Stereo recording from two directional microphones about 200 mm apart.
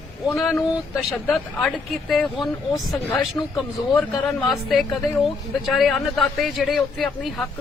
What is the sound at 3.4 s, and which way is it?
Speech, 15° left (ahead or behind).